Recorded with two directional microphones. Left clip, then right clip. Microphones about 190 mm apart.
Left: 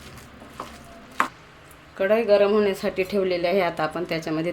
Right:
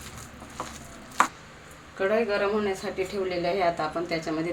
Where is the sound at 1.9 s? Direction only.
40° left (ahead or behind).